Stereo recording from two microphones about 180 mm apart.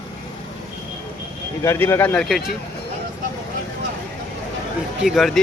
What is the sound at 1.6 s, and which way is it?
Speech, 15° left (ahead or behind).